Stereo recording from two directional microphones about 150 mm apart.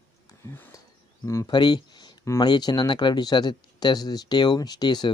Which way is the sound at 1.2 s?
25° left (ahead or behind).